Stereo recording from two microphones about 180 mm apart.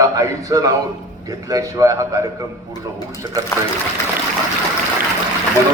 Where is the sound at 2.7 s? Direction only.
20° left (ahead or behind).